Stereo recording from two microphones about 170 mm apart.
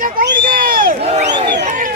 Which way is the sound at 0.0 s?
55° right (ahead or behind).